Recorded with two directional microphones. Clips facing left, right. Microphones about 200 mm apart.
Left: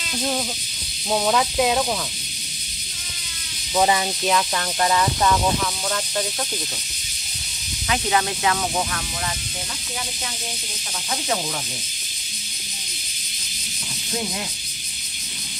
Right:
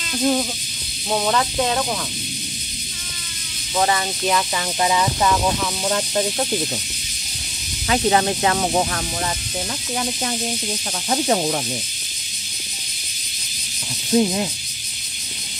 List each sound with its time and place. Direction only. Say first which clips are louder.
0.2 s speech: right 6 dB; centre (ahead or behind)
3.7 s speech: left 1 dB; 10° left (ahead or behind)
4.3 s speech: right 1 dB; centre (ahead or behind)
5.9 s speech: right 7 dB; 25° right (ahead or behind)
7.9 s speech: right 5 dB; 35° right (ahead or behind)
11.1 s speech: right 7 dB; 40° right (ahead or behind)
14.1 s speech: right 11 dB; 25° right (ahead or behind)